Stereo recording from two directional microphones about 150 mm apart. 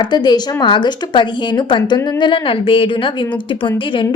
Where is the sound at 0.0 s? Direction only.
30° left (ahead or behind).